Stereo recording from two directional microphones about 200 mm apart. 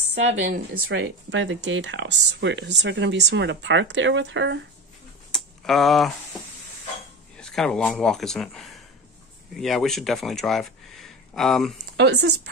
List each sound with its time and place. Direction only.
0.0 s speech: 30° right (ahead or behind)
0.8 s speech: 65° right (ahead or behind)
5.3 s a sound: centre (ahead or behind)
7.3 s speech: 5° left (ahead or behind)
12.0 s speech: 55° right (ahead or behind)